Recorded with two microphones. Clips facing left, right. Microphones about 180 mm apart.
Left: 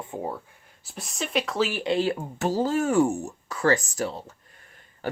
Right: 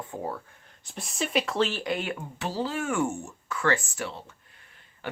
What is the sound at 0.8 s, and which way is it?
Speech, centre (ahead or behind).